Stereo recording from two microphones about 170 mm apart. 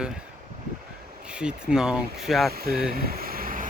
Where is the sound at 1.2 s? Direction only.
5° right (ahead or behind).